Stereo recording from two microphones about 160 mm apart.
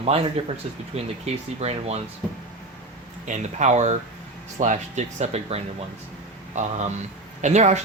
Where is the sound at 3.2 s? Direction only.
50° right (ahead or behind).